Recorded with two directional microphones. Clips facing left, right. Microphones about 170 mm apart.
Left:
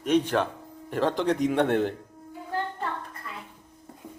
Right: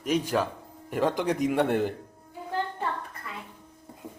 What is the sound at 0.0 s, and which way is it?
A man's voice, 5° right (ahead or behind).